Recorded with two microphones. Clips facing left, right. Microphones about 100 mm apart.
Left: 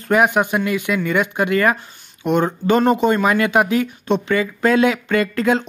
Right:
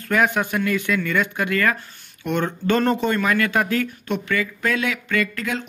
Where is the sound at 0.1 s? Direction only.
20° left (ahead or behind).